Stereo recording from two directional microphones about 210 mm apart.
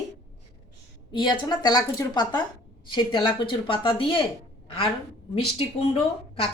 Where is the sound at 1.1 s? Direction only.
20° left (ahead or behind).